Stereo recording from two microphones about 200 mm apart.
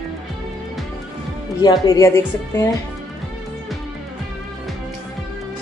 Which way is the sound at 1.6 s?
20° left (ahead or behind).